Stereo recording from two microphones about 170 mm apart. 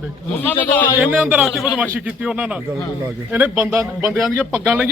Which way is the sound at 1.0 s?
5° right (ahead or behind).